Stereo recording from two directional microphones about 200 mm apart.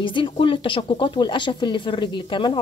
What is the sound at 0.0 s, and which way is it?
Speech, 25° left (ahead or behind).